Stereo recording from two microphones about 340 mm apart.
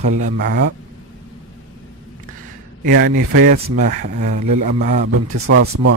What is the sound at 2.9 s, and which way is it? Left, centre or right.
Speech, right.